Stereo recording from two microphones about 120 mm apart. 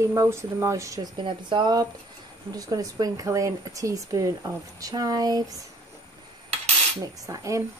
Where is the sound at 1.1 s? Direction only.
40° right (ahead or behind).